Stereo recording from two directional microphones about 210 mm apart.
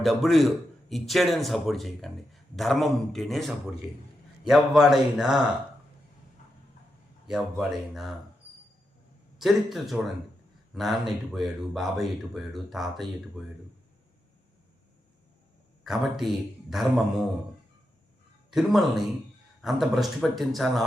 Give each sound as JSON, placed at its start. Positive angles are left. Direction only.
{"t": 0.0, "sound": "a man's voice", "side_deg": 0}
{"t": 7.3, "sound": "a man's voice", "side_deg": 0}
{"t": 9.4, "sound": "a man's voice", "side_deg": 0}
{"t": 15.8, "sound": "a man's voice", "side_deg": 0}
{"t": 18.5, "sound": "a man's voice", "side_deg": 0}